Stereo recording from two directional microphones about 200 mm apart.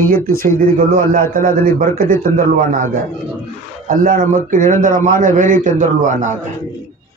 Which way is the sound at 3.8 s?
45° right (ahead or behind).